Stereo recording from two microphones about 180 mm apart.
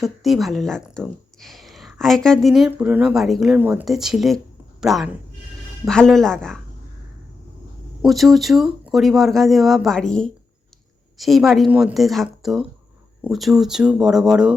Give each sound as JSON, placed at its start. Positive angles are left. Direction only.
{"t": 0.0, "sound": "a woman's voice", "side_deg": 0}
{"t": 8.0, "sound": "a woman's voice", "side_deg": 0}